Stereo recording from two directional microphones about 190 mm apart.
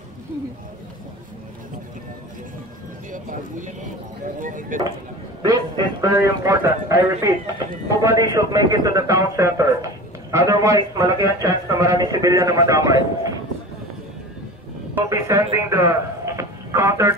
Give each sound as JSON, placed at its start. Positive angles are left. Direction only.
{"t": 3.1, "sound": "clip-clop", "side_deg": -45}
{"t": 4.4, "sound": "speech", "side_deg": -45}
{"t": 5.4, "sound": "a man's voice", "side_deg": -20}
{"t": 15.0, "sound": "a man's voice", "side_deg": -15}